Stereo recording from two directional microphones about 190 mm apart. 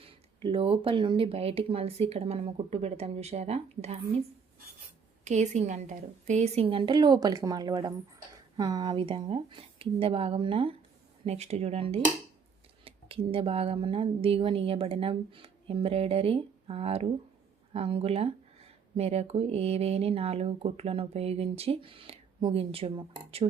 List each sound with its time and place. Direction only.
0.0 s speech: 30° right (ahead or behind)
5.2 s a woman's voice: 40° right (ahead or behind)